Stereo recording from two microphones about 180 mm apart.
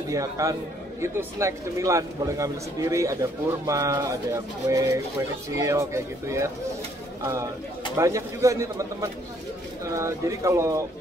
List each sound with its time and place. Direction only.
0.1 s a man's voice: 20° right (ahead or behind)
7.9 s speech: 15° right (ahead or behind)